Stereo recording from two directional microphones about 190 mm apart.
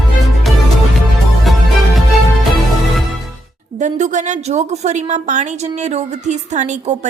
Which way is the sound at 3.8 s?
40° right (ahead or behind).